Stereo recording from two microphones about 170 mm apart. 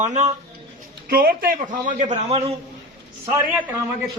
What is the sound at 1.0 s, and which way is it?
Speech, 60° right (ahead or behind).